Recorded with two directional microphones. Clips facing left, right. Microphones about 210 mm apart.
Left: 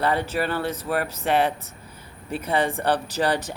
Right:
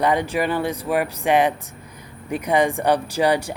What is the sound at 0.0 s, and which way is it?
Speech, 15° right (ahead or behind).